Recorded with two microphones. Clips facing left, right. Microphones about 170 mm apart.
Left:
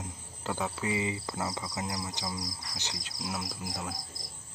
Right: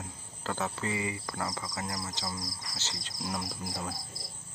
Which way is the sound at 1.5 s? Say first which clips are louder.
Left 1 dB; 10° left (ahead or behind).